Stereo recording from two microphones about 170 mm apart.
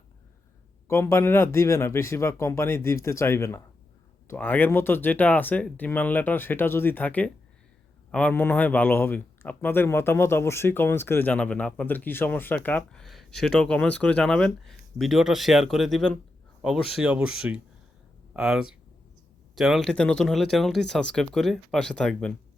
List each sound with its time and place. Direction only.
0.9 s a man's voice: 15° left (ahead or behind)